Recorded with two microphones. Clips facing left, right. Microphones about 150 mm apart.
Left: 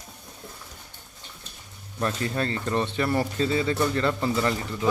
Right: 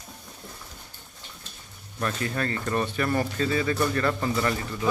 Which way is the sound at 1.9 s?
25° left (ahead or behind).